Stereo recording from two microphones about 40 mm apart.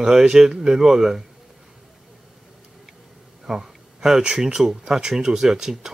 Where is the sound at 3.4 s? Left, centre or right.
Centre.